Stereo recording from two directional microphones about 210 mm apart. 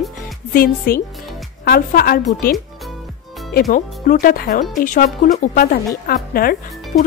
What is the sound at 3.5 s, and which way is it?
A woman's voice, 40° left (ahead or behind).